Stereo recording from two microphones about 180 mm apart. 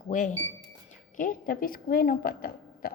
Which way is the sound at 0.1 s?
45° left (ahead or behind).